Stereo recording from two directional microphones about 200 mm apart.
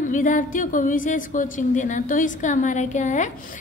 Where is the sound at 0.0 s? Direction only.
40° left (ahead or behind).